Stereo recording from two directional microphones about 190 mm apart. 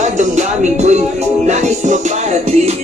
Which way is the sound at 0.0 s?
40° right (ahead or behind).